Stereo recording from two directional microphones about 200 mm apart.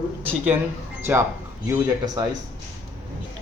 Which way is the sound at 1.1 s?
10° right (ahead or behind).